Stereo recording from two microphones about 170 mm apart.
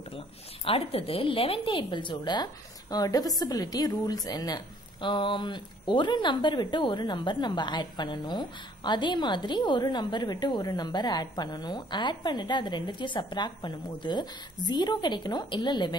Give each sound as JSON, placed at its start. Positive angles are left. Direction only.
{"t": 0.7, "sound": "a woman's voice", "side_deg": 35}